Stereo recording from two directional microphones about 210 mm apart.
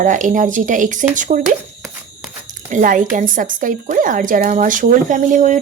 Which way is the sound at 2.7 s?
40° right (ahead or behind).